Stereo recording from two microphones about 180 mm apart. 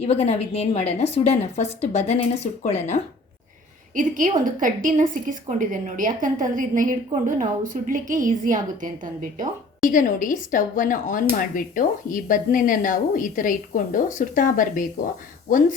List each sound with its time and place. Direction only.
0.0 s a woman's voice: 35° left (ahead or behind)
3.9 s a woman's voice: 45° right (ahead or behind)
9.9 s a woman's voice: 45° left (ahead or behind)